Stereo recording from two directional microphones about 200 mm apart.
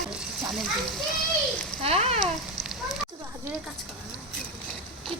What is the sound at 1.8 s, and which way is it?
Speech, 30° right (ahead or behind).